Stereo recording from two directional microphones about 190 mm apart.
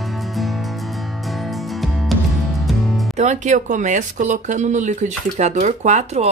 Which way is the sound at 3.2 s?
40° right (ahead or behind).